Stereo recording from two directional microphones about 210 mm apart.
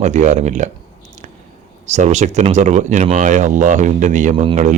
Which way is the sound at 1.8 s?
35° right (ahead or behind).